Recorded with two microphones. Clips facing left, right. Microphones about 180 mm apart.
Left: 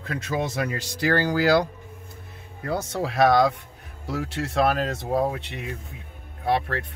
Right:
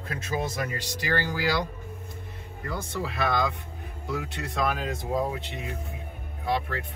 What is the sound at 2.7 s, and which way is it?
Speech, 80° left.